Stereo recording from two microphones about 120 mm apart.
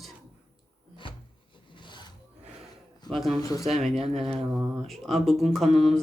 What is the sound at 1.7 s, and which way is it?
Rub, 40° left (ahead or behind).